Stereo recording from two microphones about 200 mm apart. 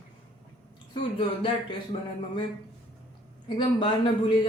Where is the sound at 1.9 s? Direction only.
30° left (ahead or behind).